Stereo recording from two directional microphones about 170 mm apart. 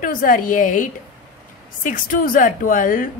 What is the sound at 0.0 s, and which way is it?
A woman's voice, 55° left (ahead or behind).